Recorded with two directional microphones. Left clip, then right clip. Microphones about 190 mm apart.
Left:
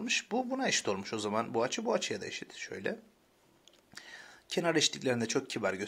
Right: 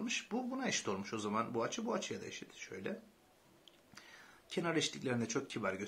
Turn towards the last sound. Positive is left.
turn(degrees=45)  # may be behind; listen again after turning